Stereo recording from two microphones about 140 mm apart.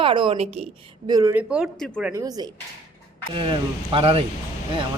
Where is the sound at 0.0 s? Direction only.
35° right (ahead or behind).